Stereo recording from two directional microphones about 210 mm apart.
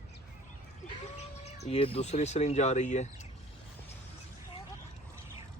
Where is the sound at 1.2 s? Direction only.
30° left (ahead or behind).